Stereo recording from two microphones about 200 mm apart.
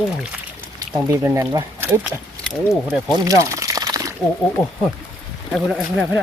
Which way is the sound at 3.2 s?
15° right (ahead or behind).